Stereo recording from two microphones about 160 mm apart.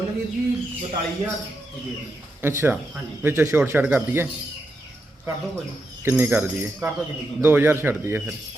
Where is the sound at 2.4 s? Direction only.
15° right (ahead or behind).